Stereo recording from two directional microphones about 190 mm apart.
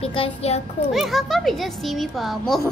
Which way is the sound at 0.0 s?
30° left (ahead or behind).